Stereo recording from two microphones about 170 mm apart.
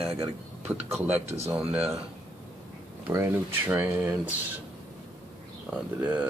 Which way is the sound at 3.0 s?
15° right (ahead or behind).